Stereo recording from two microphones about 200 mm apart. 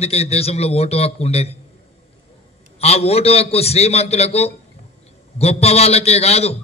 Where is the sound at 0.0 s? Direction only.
30° left (ahead or behind).